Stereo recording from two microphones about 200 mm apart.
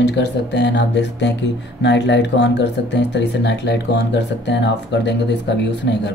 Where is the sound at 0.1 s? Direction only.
60° left (ahead or behind).